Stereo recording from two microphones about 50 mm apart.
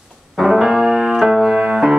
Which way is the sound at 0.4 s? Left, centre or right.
Centre.